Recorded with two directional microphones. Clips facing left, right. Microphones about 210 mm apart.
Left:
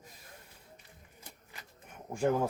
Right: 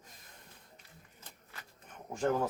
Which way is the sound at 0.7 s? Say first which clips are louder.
Left 2 dB; 10° left (ahead or behind).